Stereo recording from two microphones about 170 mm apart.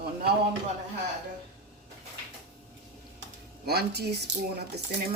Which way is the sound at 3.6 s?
70° right (ahead or behind).